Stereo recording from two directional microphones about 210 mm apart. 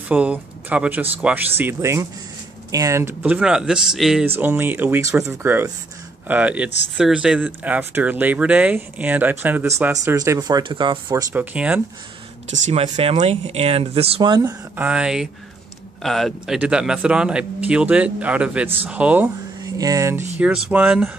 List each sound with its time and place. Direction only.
0.1 s speech: 5° right (ahead or behind)
11.3 s speech: 5° right (ahead or behind)
12.4 s speech: 35° right (ahead or behind)
14.8 s speech: 5° right (ahead or behind)